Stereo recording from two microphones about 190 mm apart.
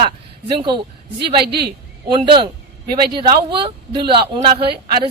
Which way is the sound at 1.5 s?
60° right (ahead or behind).